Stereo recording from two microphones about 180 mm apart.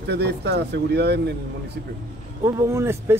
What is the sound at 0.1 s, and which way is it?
Speech, 65° right (ahead or behind).